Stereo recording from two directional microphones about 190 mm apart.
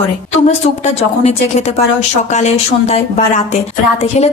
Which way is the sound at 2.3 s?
35° left (ahead or behind).